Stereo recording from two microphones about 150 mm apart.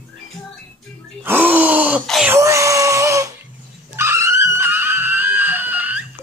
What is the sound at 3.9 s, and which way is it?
Screaming, 20° right (ahead or behind).